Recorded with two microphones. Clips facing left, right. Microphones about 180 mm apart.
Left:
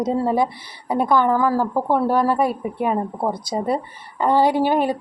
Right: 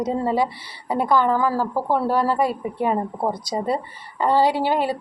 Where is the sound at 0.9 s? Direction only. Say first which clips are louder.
Left 1 dB; 15° left (ahead or behind).